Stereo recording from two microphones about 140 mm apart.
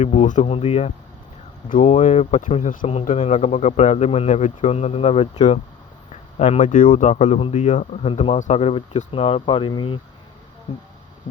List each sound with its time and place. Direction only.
0.0 s speech: 55° left (ahead or behind)
0.4 s speech: 45° left (ahead or behind)
8.4 s speech: 55° left (ahead or behind); by 9.9 s 40° left (ahead or behind)